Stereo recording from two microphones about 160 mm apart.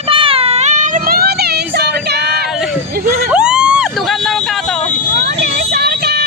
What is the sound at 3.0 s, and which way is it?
Vehicle, 10° right (ahead or behind).